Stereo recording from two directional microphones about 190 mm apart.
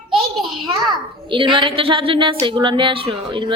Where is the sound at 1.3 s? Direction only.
25° right (ahead or behind).